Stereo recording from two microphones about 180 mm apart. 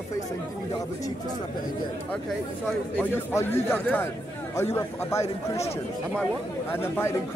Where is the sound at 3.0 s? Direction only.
15° left (ahead or behind).